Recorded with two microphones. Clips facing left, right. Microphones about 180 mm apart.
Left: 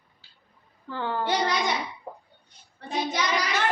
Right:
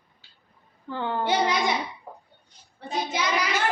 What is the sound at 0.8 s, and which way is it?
Speech, 20° right (ahead or behind).